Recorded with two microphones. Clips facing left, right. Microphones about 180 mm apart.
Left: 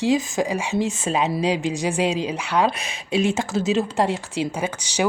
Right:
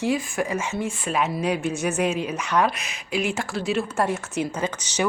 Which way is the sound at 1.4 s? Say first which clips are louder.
Left 2 dB; 90° left.